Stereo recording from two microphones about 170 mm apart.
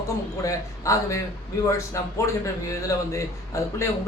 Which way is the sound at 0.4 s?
20° left (ahead or behind).